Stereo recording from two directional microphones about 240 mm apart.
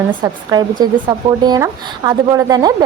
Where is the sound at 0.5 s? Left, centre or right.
Centre.